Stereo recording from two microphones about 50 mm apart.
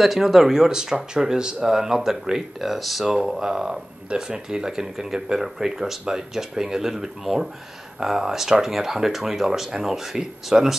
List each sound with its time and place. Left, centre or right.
0.0 s speech: centre